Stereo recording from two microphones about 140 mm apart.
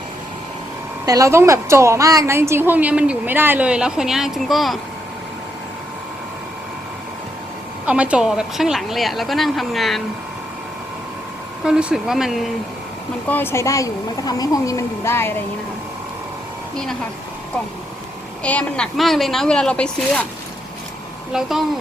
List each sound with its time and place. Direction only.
1.0 s a woman's voice: 25° right (ahead or behind); by 4.8 s centre (ahead or behind)
7.9 s a woman's voice: 10° right (ahead or behind)
11.6 s a woman's voice: 5° right (ahead or behind)
13.2 s a woman's voice: 15° left (ahead or behind)
18.4 s a woman's voice: 10° left (ahead or behind)
21.3 s a woman's voice: centre (ahead or behind)